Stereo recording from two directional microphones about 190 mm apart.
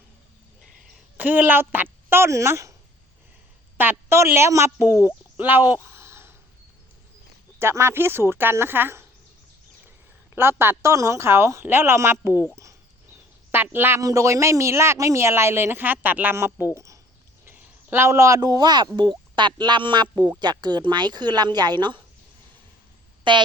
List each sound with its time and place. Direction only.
1.1 s speech: 10° right (ahead or behind)
3.8 s speech: 10° right (ahead or behind)
5.4 s a sound: 10° right (ahead or behind)
7.6 s speech: 15° right (ahead or behind)
10.6 s speech: 15° right (ahead or behind)
12.3 s speech: 15° left (ahead or behind)
13.5 s speech: 10° right (ahead or behind)
23.3 s speech: 25° right (ahead or behind)